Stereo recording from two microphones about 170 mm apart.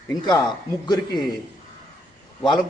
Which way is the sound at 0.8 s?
25° left (ahead or behind).